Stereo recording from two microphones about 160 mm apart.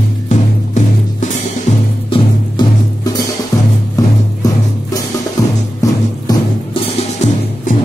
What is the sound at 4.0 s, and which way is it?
Music, 20° left (ahead or behind).